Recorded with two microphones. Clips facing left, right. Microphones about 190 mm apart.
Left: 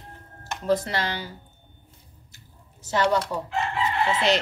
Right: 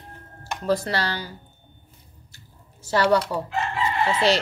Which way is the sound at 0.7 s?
20° left (ahead or behind).